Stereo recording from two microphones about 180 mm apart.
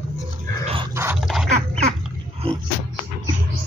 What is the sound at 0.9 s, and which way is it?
Dog, 15° right (ahead or behind).